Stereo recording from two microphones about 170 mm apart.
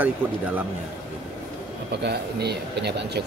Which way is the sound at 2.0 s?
75° right (ahead or behind).